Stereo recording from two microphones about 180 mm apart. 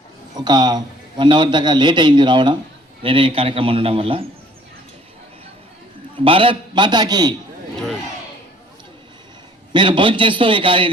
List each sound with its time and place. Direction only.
0.3 s a man's voice: 25° right (ahead or behind)
6.2 s a man's voice: 30° right (ahead or behind)
9.7 s a man's voice: 25° right (ahead or behind)